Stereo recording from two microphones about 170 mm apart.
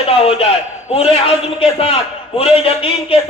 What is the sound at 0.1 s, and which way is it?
A man's voice, 35° left (ahead or behind).